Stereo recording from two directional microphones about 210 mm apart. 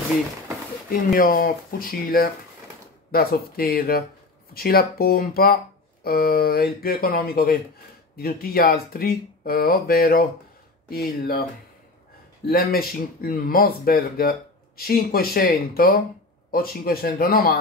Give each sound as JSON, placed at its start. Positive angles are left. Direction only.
{"t": 0.8, "sound": "speech", "side_deg": 45}
{"t": 12.4, "sound": "speech", "side_deg": 45}